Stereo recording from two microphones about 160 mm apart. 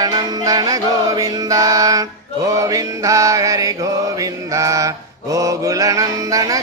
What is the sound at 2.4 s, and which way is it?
Mantra, 20° right (ahead or behind).